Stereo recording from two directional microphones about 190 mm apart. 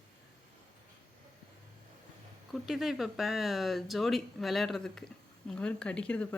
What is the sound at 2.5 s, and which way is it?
Speech, centre (ahead or behind).